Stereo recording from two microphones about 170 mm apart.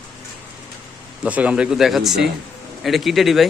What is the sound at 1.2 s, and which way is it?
Speech, 5° right (ahead or behind).